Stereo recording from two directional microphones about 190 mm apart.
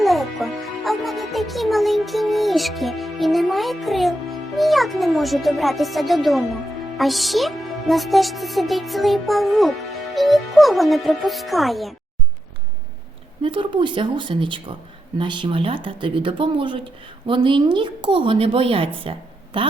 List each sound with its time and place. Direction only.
0.0 s speech: centre (ahead or behind)
13.4 s speech: 25° right (ahead or behind)